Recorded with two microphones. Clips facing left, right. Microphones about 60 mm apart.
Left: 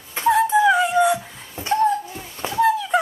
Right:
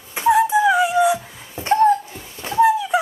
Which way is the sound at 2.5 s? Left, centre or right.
Centre.